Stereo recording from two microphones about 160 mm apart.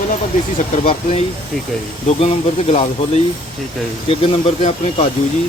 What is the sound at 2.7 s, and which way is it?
Speech, 40° left (ahead or behind).